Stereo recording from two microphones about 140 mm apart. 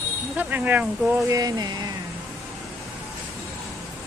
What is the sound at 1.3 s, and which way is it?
Speech, 25° right (ahead or behind).